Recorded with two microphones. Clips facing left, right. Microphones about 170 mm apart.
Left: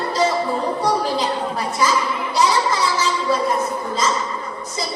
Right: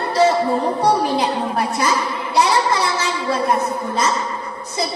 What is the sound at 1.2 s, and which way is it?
Speech, 65° right (ahead or behind).